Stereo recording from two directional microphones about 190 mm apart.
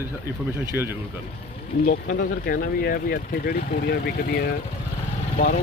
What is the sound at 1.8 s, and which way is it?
Speech, 50° left (ahead or behind).